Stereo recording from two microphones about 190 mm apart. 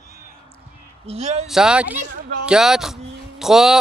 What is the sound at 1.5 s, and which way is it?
Speech, 5° right (ahead or behind).